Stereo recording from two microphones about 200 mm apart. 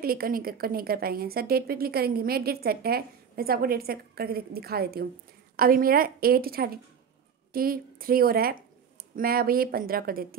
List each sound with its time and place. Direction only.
0.0 s a woman's voice: 50° right (ahead or behind)